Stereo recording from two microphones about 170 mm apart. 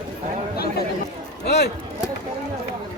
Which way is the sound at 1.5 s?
75° left (ahead or behind).